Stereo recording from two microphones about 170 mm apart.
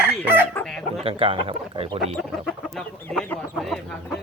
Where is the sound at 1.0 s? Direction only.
30° right (ahead or behind).